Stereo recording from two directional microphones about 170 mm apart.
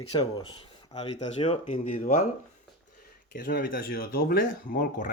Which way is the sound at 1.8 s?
50° left (ahead or behind).